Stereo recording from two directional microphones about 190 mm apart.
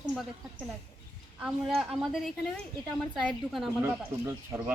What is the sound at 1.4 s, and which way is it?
A woman's voice, centre (ahead or behind).